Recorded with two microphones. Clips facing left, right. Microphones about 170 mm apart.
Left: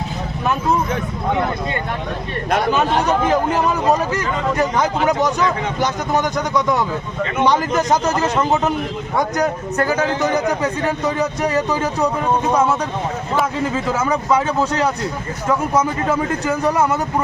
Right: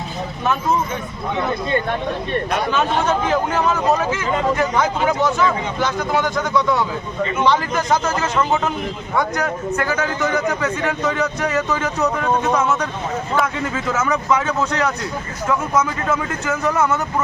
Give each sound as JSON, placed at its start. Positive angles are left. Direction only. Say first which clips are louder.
{"t": 6.2, "sound": "speech", "louder": "even", "side_deg": 15}
{"t": 7.7, "sound": "a man's voice", "louder": "left 2 dB", "side_deg": 40}
{"t": 12.0, "sound": "speech", "louder": "right 1 dB", "side_deg": 10}
{"t": 13.7, "sound": "a man's voice", "louder": "right 1 dB", "side_deg": 30}